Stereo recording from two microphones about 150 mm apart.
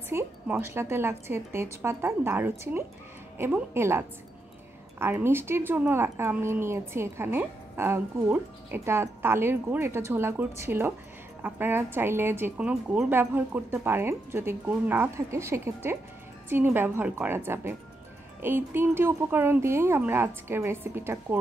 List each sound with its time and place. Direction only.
0.1 s speech: 15° right (ahead or behind)